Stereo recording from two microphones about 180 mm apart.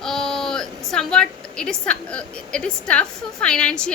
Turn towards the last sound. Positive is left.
turn(degrees=5)  # may be behind; listen again after turning